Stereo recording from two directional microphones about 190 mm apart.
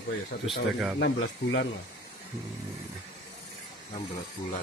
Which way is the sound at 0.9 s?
65° left (ahead or behind).